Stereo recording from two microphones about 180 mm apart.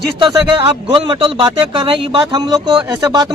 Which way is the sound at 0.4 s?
25° right (ahead or behind).